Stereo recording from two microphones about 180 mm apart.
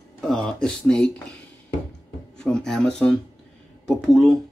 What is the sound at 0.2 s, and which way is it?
Speech, centre (ahead or behind).